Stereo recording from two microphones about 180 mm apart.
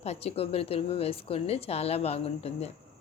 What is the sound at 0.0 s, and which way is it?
A woman's voice, 35° left (ahead or behind).